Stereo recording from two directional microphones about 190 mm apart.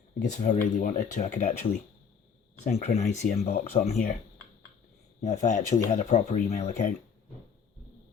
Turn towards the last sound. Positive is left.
turn(degrees=40)  # may be behind; listen again after turning